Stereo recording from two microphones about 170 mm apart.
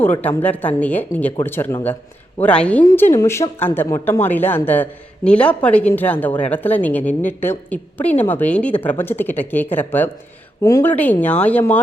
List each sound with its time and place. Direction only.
0.0 s a woman's voice: 10° left (ahead or behind)